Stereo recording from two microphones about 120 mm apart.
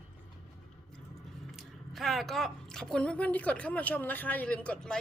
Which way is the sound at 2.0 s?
Centre (ahead or behind).